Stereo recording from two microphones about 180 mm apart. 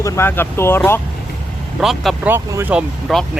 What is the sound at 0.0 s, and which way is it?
Speech, 15° left (ahead or behind).